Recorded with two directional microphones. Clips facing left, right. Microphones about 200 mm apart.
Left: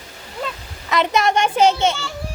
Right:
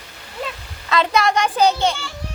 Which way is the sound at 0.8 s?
15° left (ahead or behind).